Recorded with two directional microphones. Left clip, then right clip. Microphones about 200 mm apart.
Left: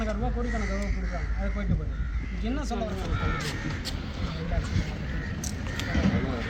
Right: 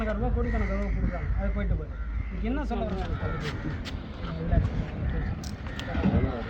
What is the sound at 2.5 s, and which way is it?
Speech, centre (ahead or behind).